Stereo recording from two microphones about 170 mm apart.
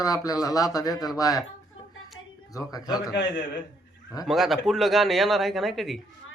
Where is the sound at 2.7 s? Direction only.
20° left (ahead or behind).